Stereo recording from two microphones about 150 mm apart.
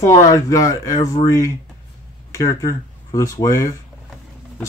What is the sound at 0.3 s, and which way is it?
Speech, 20° left (ahead or behind).